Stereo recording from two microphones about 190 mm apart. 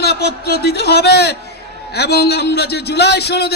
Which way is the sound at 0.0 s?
60° left (ahead or behind).